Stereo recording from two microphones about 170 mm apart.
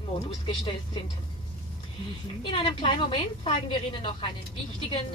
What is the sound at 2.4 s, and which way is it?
A woman's voice, 30° left (ahead or behind).